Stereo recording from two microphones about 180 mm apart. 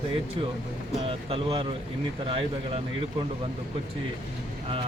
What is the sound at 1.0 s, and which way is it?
Speech, 30° right (ahead or behind).